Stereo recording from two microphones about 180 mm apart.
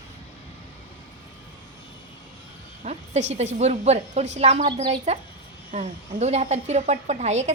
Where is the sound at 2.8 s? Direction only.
40° right (ahead or behind).